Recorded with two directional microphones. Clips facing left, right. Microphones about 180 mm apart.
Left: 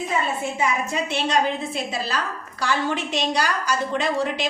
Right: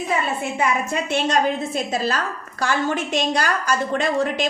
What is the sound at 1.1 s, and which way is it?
A woman's voice, 45° right (ahead or behind).